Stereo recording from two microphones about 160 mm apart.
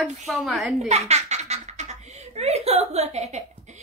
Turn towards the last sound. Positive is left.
turn(degrees=-45)  # may be behind; listen again after turning